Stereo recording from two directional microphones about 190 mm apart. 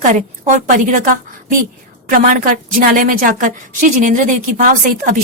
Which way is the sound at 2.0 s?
45° right (ahead or behind).